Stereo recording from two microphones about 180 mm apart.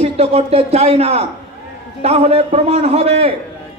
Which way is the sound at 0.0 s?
35° right (ahead or behind).